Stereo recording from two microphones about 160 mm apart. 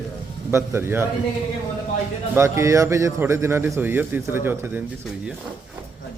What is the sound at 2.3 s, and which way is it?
A man's voice, 15° right (ahead or behind).